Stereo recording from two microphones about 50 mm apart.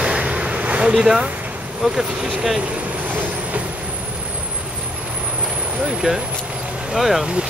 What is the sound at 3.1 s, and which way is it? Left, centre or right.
Vehicle, right.